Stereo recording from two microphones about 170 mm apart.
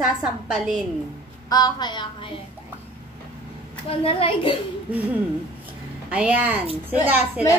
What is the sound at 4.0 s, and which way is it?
Speech, 35° left (ahead or behind).